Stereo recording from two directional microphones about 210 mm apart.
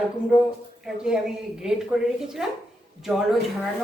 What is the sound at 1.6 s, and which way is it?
Speech, 5° right (ahead or behind).